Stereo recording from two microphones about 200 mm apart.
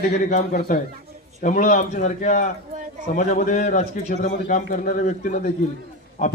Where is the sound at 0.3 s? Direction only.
40° left (ahead or behind).